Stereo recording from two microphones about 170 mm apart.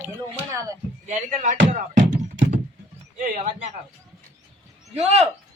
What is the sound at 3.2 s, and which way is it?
Speech, 50° right (ahead or behind).